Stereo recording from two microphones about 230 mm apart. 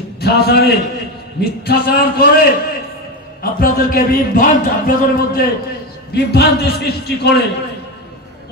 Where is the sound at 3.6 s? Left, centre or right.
Left.